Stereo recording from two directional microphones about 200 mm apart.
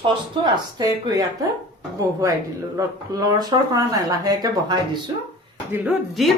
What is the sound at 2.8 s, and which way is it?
Speech, 15° right (ahead or behind).